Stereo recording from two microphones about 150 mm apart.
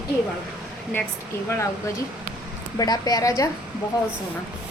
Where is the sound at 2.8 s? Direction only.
25° left (ahead or behind).